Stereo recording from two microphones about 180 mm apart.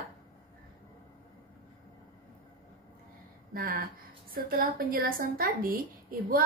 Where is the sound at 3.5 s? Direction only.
55° right (ahead or behind).